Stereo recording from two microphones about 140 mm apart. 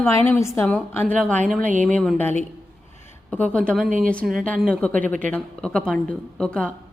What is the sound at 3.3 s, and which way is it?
Speech, 10° left (ahead or behind).